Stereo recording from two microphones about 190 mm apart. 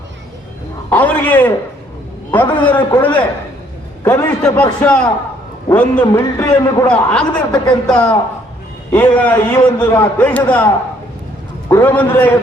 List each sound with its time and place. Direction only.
0.9 s a man's voice: 10° left (ahead or behind)
6.8 s a man's voice: 5° left (ahead or behind)
11.7 s a man's voice: 10° left (ahead or behind)